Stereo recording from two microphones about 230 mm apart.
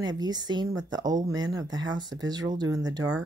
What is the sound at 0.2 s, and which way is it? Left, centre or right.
Speech, centre.